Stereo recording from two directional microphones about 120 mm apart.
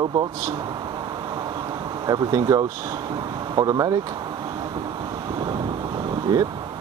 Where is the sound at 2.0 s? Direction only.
35° right (ahead or behind).